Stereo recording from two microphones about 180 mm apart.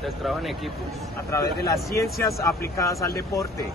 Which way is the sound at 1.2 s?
20° left (ahead or behind).